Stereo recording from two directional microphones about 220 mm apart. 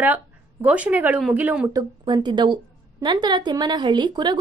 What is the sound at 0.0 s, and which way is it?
Speech, 10° right (ahead or behind).